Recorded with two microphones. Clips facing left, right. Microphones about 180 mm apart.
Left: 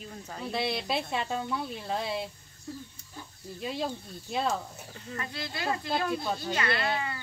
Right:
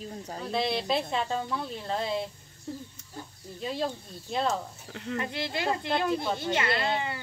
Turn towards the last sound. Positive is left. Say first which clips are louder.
# right 2 dB
turn(degrees=-25)  # may be behind; listen again after turning